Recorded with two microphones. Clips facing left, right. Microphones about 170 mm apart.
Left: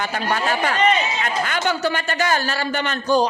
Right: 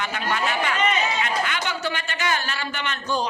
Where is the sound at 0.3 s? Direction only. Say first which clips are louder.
Left 3 dB; 40° left (ahead or behind).